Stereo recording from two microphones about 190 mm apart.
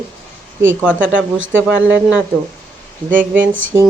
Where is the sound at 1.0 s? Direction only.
80° right.